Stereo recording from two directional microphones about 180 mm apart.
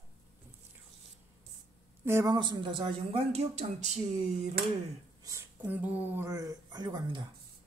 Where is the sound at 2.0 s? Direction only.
15° right (ahead or behind); by 3.9 s 35° right (ahead or behind).